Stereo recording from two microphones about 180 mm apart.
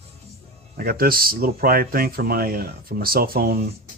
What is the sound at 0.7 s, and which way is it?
Speech, 55° right (ahead or behind).